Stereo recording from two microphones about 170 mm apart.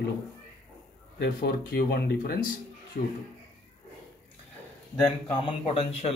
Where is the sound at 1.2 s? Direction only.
65° left (ahead or behind).